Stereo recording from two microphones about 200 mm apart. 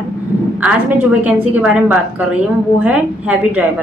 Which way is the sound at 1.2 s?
5° right (ahead or behind).